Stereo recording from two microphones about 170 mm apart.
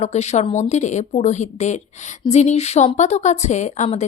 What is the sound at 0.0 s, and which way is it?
A woman's voice, 40° left (ahead or behind).